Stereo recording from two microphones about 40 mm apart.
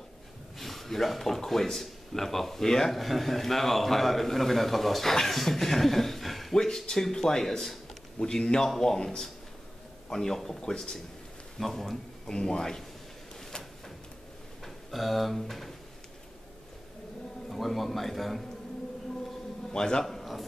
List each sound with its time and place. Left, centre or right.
0.6 s speech: centre
8.2 s speech: centre
12.3 s speech: centre
14.6 s speech: centre
17.5 s speech: centre
19.7 s speech: centre
20.1 s a sound: centre